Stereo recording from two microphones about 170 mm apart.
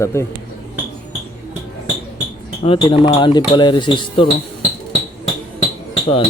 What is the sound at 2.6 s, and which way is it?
Speech, 30° left (ahead or behind).